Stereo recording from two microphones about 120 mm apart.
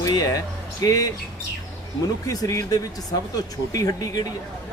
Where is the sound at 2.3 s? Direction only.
30° left (ahead or behind).